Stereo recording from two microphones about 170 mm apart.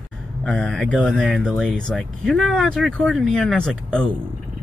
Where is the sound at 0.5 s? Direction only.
Centre (ahead or behind).